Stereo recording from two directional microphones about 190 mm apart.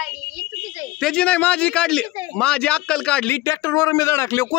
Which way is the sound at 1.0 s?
5° left (ahead or behind).